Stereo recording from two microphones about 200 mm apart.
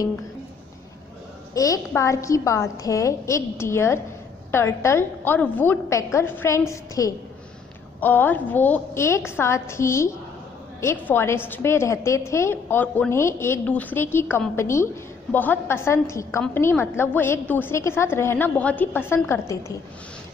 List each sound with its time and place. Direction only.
1.5 s a woman's voice: 15° left (ahead or behind)